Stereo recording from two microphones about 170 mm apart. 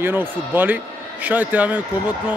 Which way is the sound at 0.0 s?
10° right (ahead or behind).